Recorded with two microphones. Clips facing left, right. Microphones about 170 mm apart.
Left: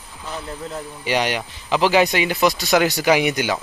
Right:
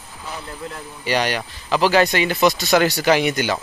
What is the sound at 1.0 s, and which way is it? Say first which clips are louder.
Speech: right 1 dB; 15° left (ahead or behind).